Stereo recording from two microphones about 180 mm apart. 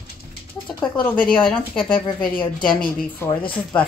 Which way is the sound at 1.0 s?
5° left (ahead or behind).